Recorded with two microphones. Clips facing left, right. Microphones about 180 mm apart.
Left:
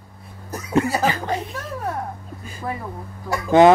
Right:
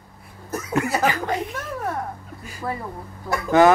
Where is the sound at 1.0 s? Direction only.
30° left (ahead or behind).